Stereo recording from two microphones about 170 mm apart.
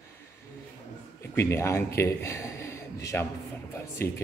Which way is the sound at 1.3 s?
15° left (ahead or behind).